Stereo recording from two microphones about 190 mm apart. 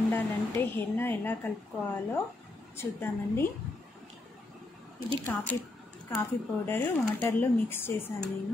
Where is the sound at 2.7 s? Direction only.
15° left (ahead or behind).